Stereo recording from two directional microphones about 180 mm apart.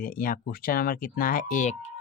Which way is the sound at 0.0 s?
50° left (ahead or behind).